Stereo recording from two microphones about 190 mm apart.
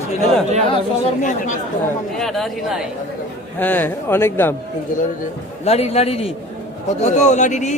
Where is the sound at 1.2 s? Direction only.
40° left (ahead or behind).